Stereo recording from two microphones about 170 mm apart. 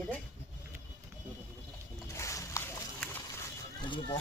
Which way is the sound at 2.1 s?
20° left (ahead or behind).